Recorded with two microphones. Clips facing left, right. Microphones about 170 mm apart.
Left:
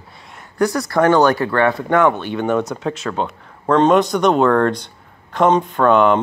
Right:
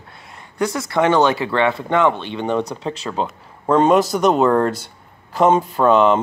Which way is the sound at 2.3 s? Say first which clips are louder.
Left 2 dB; 5° left (ahead or behind).